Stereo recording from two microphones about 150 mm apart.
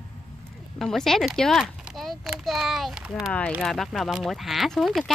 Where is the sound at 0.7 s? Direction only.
5° left (ahead or behind).